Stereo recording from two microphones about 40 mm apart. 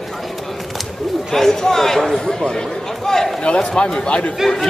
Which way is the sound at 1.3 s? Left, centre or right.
Centre.